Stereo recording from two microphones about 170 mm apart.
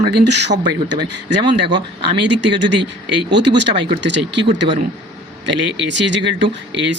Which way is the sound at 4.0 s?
90° right.